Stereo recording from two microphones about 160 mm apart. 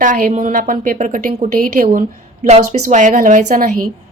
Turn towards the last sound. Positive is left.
turn(degrees=-60)  # may be behind; listen again after turning